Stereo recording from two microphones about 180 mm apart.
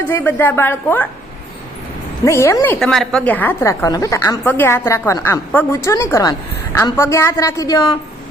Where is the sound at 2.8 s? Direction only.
5° left (ahead or behind).